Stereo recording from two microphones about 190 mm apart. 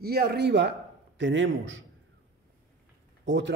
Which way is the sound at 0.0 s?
55° right (ahead or behind).